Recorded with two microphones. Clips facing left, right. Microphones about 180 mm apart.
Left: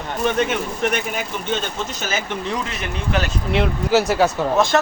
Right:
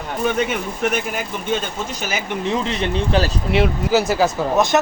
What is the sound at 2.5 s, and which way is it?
Speech, 30° right (ahead or behind).